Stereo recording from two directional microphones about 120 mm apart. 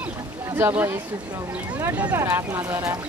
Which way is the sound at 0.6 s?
20° right (ahead or behind).